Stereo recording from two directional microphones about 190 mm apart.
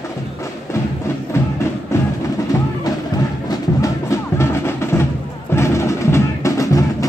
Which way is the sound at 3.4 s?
15° left (ahead or behind).